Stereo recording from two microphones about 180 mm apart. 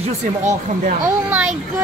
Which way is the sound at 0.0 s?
40° right (ahead or behind).